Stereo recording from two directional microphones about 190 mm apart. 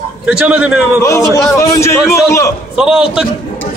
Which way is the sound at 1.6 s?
15° left (ahead or behind).